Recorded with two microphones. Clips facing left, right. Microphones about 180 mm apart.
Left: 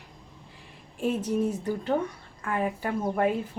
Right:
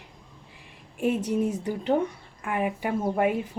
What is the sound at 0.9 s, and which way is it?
A woman's voice, 15° right (ahead or behind).